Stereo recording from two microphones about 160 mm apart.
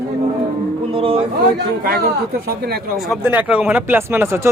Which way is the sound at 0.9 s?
35° right (ahead or behind).